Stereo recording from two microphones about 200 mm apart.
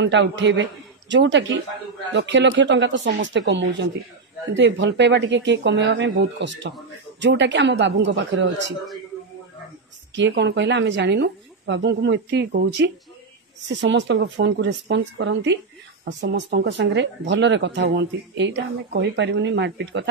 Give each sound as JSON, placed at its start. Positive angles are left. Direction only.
{"t": 0.0, "sound": "a man's voice", "side_deg": -65}
{"t": 10.1, "sound": "speech", "side_deg": -60}